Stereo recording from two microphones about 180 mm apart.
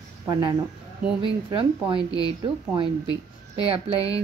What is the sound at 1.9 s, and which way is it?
Speech, 20° left (ahead or behind).